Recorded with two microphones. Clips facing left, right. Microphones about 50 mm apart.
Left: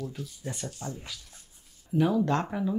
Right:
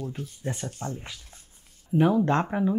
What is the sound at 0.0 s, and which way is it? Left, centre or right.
Speech, right.